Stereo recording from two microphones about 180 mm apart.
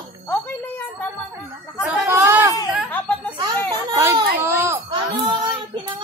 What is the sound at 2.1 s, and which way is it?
Speech, 15° right (ahead or behind).